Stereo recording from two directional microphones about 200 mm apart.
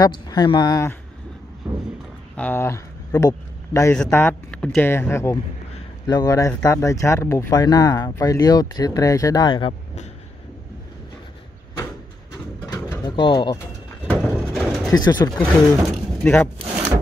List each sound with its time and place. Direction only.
0.0 s speech: 20° left (ahead or behind)
1.6 s a sound: 15° right (ahead or behind)
2.3 s speech: 10° left (ahead or behind); by 10.0 s 25° left (ahead or behind)
12.6 s bird: 15° left (ahead or behind)
14.0 s a sound: centre (ahead or behind)
14.9 s speech: 20° left (ahead or behind)
16.2 s speech: 10° left (ahead or behind)